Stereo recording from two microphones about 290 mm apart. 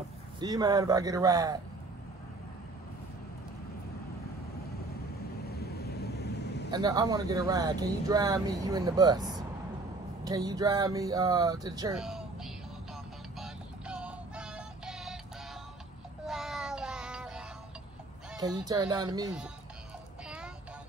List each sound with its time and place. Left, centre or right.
0.4 s speech: centre
5.5 s vehicle: left
6.7 s speech: centre
11.9 s a sound: centre
13.4 s synthetic singing: centre
16.3 s meow: centre
18.7 s speech: centre